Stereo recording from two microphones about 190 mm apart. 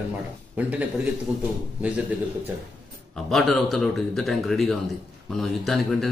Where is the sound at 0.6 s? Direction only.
5° right (ahead or behind).